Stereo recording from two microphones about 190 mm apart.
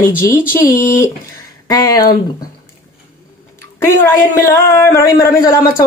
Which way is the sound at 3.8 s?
15° left (ahead or behind).